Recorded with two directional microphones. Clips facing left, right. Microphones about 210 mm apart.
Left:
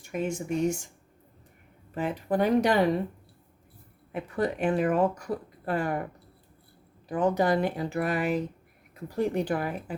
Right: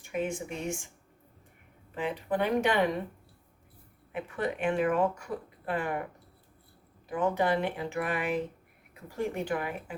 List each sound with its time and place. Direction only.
0.0 s speech: 40° left (ahead or behind)
2.0 s speech: 45° left (ahead or behind)
4.1 s speech: 40° left (ahead or behind)
7.1 s speech: 40° left (ahead or behind)